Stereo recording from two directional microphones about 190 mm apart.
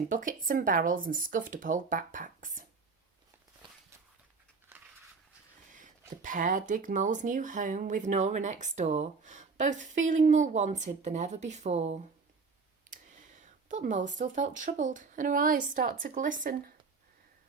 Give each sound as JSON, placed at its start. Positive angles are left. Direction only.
{"t": 0.1, "sound": "speech", "side_deg": -45}
{"t": 5.7, "sound": "speech", "side_deg": -40}
{"t": 12.9, "sound": "a sound", "side_deg": -40}
{"t": 14.2, "sound": "speech", "side_deg": -40}